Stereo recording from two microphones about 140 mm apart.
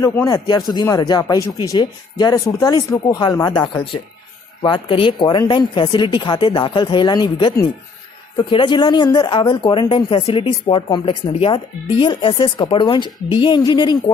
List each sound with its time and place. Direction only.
0.0 s speech: 25° left (ahead or behind)